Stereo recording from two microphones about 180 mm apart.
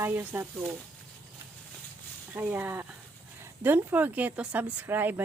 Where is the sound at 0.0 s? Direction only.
10° right (ahead or behind).